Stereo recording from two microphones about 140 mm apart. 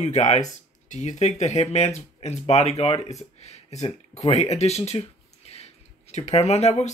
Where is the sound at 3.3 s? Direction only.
50° left (ahead or behind).